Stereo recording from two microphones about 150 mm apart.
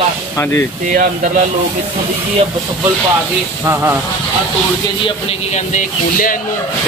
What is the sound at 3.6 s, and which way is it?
Speech, 15° right (ahead or behind).